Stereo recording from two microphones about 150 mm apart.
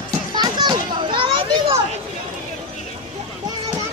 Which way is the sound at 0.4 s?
30° right (ahead or behind).